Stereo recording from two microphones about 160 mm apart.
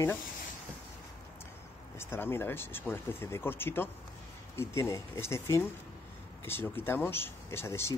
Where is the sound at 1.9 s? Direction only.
15° left (ahead or behind).